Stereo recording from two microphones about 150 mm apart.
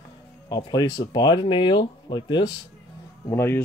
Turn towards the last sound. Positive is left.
turn(degrees=15)  # may be behind; listen again after turning